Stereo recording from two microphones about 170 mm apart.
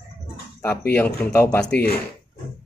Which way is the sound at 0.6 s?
10° left (ahead or behind).